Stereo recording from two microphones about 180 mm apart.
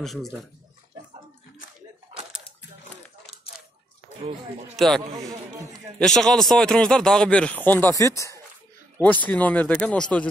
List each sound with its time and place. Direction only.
0.0 s speech: centre (ahead or behind)
2.1 s a sound: 35° right (ahead or behind)
4.7 s speech: centre (ahead or behind)